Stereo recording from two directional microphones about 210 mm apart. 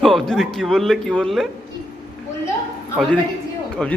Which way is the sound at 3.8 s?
5° left (ahead or behind).